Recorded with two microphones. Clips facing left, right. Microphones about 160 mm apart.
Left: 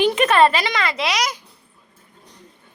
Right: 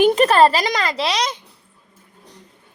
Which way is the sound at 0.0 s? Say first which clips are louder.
Right 4 dB; 45° right (ahead or behind).